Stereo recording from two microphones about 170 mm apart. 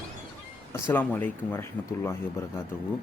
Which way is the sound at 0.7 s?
10° left (ahead or behind).